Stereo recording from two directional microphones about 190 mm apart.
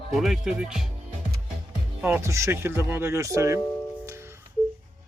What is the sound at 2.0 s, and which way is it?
Speech, 10° right (ahead or behind).